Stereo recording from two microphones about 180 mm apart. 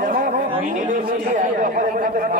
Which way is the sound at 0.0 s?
45° right (ahead or behind).